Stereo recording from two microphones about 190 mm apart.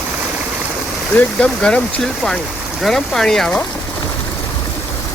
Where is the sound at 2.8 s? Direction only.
Centre (ahead or behind).